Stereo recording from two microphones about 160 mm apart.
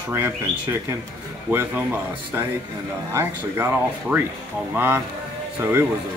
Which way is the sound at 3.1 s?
15° right (ahead or behind).